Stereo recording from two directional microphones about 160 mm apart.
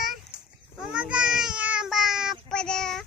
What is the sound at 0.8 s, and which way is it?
Child singing, 5° right (ahead or behind).